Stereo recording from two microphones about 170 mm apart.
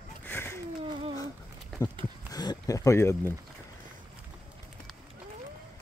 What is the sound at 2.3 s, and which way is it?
Speech, 20° left (ahead or behind).